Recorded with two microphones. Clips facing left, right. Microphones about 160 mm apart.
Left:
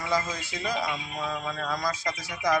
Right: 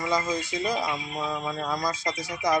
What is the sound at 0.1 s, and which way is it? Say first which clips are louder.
Speech: right 1 dB; 20° right (ahead or behind).